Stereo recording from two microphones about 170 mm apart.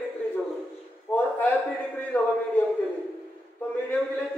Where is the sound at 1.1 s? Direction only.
10° left (ahead or behind).